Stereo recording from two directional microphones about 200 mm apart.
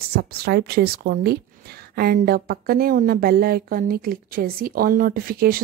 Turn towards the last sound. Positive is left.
turn(degrees=-45)  # may be behind; listen again after turning